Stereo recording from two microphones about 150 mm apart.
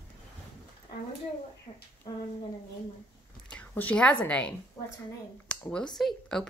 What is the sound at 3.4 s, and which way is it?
Speech, 10° left (ahead or behind).